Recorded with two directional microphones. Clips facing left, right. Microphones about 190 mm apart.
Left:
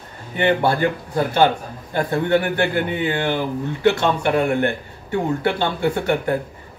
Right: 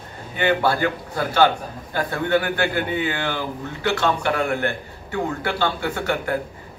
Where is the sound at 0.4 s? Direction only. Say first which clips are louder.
Left 2 dB; 20° left (ahead or behind).